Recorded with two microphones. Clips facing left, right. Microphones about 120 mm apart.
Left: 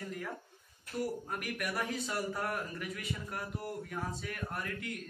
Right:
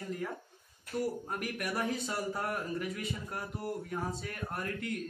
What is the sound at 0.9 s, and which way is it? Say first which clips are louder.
A man's voice: right 2 dB; 25° right (ahead or behind).